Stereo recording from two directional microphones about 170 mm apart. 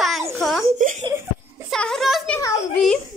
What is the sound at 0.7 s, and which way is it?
Speech, 50° right (ahead or behind).